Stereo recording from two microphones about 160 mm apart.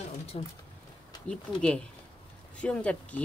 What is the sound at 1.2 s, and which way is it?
Speech, 5° left (ahead or behind).